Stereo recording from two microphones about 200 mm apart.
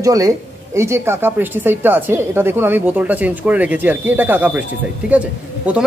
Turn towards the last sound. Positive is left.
turn(degrees=-5)  # may be behind; listen again after turning